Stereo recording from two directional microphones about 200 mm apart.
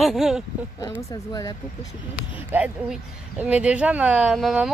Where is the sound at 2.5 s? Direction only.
5° right (ahead or behind).